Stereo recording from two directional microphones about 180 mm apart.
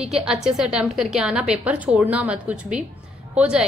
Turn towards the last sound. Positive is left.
turn(degrees=-5)  # may be behind; listen again after turning